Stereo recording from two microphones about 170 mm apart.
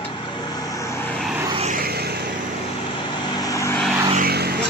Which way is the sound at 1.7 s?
65° right (ahead or behind).